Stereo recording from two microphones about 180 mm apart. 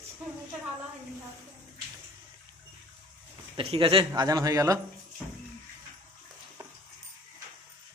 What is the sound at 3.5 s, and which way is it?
A man's voice, 30° right (ahead or behind).